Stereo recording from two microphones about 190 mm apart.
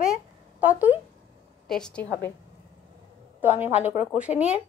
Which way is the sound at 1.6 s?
5° left (ahead or behind).